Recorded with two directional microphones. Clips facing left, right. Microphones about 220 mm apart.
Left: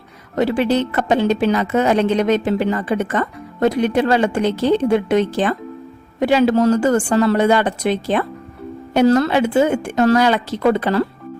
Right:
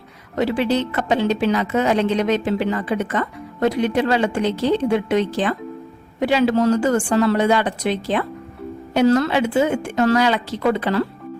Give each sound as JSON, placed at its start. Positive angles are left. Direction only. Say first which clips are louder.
{"t": 0.3, "sound": "a woman's voice", "louder": "left 3 dB", "side_deg": 45}